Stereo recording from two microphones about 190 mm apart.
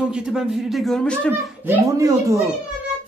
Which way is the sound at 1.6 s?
15° right (ahead or behind).